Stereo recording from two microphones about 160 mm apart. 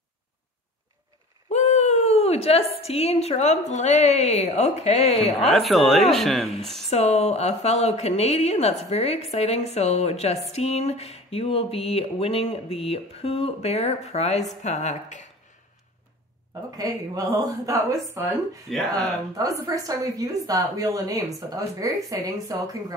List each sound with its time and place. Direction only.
1.5 s a woman's voice: 45° left (ahead or behind)
5.5 s speech: centre (ahead or behind)
6.9 s a woman's voice: 40° left (ahead or behind)
16.7 s a woman's voice: 20° right (ahead or behind)
18.7 s speech: centre (ahead or behind)
19.3 s a woman's voice: 20° right (ahead or behind)